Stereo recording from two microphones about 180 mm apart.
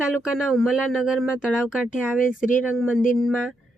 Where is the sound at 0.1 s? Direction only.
Centre (ahead or behind).